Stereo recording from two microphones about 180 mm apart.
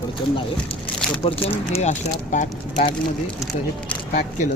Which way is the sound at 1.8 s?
45° left (ahead or behind).